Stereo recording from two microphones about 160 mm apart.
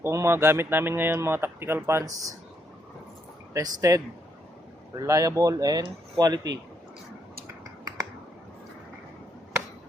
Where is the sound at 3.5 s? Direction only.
20° right (ahead or behind).